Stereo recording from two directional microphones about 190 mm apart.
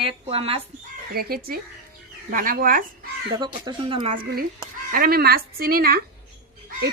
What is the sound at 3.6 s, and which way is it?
Speech, 25° right (ahead or behind).